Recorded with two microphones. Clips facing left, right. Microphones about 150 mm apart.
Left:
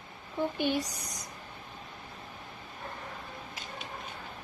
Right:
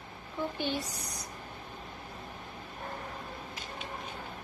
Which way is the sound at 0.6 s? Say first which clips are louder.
Left 4 dB; 15° left (ahead or behind).